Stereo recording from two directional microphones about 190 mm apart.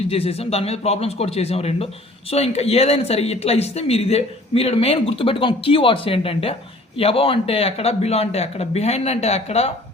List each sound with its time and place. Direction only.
0.1 s speech: 30° left (ahead or behind)